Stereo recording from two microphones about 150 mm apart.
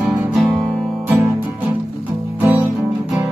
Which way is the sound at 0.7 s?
Centre (ahead or behind).